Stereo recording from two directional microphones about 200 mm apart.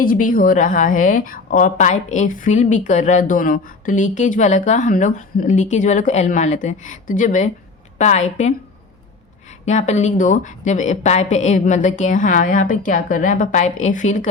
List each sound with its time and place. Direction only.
0.0 s a woman's voice: 45° left (ahead or behind)
9.6 s a woman's voice: 35° left (ahead or behind)